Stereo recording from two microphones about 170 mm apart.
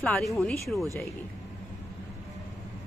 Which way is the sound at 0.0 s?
Centre (ahead or behind).